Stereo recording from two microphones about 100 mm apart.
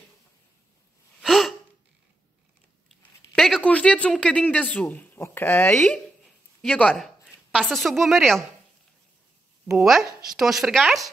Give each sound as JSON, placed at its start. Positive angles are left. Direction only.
{"t": 1.2, "sound": "gasp", "side_deg": 0}
{"t": 2.9, "sound": "a sound", "side_deg": 0}
{"t": 3.6, "sound": "speech", "side_deg": 10}
{"t": 5.7, "sound": "a woman's voice", "side_deg": 5}
{"t": 9.7, "sound": "a woman's voice", "side_deg": -5}